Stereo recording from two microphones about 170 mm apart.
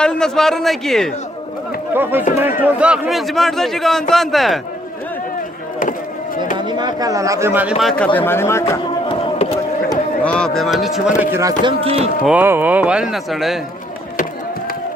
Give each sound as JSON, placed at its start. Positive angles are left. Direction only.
{"t": 0.0, "sound": "a man's voice", "side_deg": 5}
{"t": 1.9, "sound": "speech", "side_deg": -10}
{"t": 6.3, "sound": "chop", "side_deg": 50}
{"t": 6.7, "sound": "speech", "side_deg": -25}
{"t": 7.8, "sound": "speech", "side_deg": 5}
{"t": 9.0, "sound": "a sound", "side_deg": 35}
{"t": 10.2, "sound": "speech", "side_deg": 5}
{"t": 11.8, "sound": "speech", "side_deg": -35}
{"t": 12.2, "sound": "speech", "side_deg": -10}